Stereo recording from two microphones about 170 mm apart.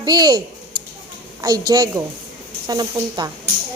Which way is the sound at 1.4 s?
20° right (ahead or behind).